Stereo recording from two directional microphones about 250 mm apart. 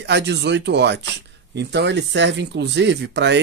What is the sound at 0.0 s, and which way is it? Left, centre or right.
Speech, right.